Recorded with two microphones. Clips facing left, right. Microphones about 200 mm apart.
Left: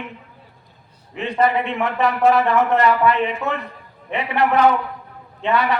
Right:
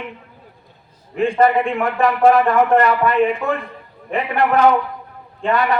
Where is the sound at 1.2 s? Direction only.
45° right (ahead or behind).